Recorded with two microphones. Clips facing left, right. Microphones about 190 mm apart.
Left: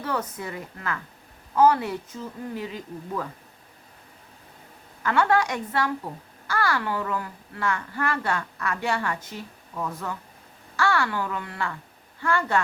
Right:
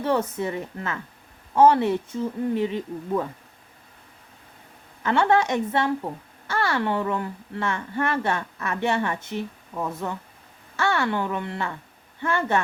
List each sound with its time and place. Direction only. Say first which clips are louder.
0.0 s a woman's voice: right 6 dB; 25° right (ahead or behind)
5.0 s a woman's voice: right 2 dB; 25° right (ahead or behind)